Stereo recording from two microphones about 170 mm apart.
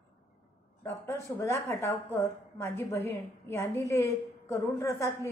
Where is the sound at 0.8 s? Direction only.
15° left (ahead or behind).